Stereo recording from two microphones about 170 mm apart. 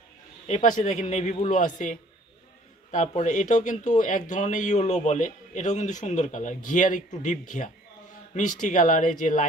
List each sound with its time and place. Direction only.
0.5 s speech: 45° left (ahead or behind)